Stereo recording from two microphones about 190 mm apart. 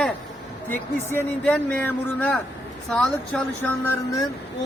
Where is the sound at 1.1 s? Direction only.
5° left (ahead or behind).